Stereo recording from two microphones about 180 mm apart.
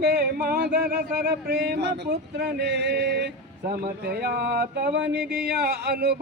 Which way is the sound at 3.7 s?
60° right (ahead or behind).